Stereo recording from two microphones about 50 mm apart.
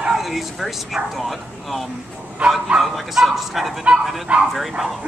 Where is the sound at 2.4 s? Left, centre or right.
Centre.